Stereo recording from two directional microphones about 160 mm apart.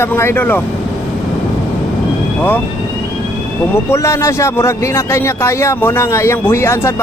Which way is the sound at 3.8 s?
15° left (ahead or behind).